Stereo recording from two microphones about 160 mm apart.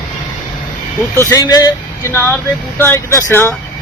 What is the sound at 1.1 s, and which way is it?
Speech, 20° left (ahead or behind).